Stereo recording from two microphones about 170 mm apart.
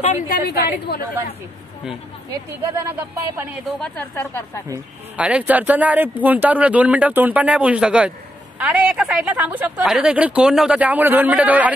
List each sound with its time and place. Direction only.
0.0 s a woman's voice: 45° left (ahead or behind)
0.7 s speech: 70° left (ahead or behind)
2.8 s a woman's voice: 10° right (ahead or behind)
3.8 s a woman's voice: 10° left (ahead or behind)
5.1 s a woman's voice: 5° right (ahead or behind)